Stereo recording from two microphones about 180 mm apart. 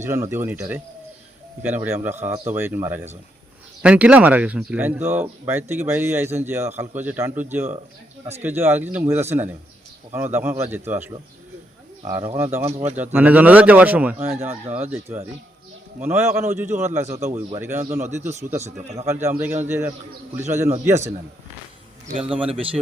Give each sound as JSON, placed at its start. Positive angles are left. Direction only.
{"t": 0.0, "sound": "speech", "side_deg": -15}
{"t": 12.6, "sound": "speech", "side_deg": -40}
{"t": 13.1, "sound": "speech", "side_deg": -10}
{"t": 18.6, "sound": "speech", "side_deg": -35}
{"t": 19.0, "sound": "speech", "side_deg": -15}
{"t": 22.2, "sound": "speech", "side_deg": -5}
{"t": 22.4, "sound": "speech", "side_deg": -30}